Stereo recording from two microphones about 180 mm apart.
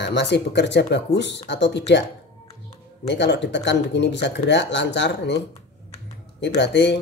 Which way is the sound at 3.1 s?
75° left (ahead or behind).